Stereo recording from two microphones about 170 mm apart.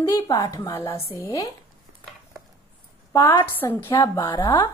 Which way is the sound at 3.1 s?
20° left (ahead or behind).